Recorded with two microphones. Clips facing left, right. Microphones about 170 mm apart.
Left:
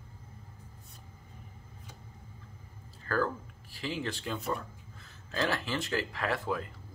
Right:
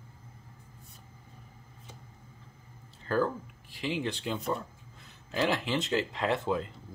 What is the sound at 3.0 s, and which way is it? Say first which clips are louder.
Speech: right 3 dB; 20° right (ahead or behind).